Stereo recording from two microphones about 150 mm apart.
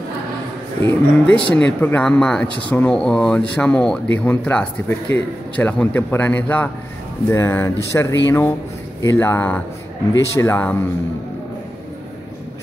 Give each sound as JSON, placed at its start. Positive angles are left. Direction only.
{"t": 0.8, "sound": "speech", "side_deg": 10}